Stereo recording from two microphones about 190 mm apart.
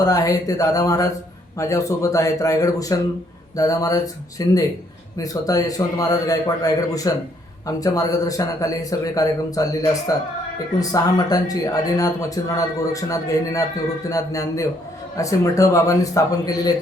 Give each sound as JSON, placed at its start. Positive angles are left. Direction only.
{"t": 0.0, "sound": "a man's voice", "side_deg": 20}